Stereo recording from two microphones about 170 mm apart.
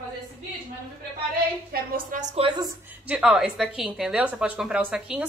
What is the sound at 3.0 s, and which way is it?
A woman's voice, 5° right (ahead or behind).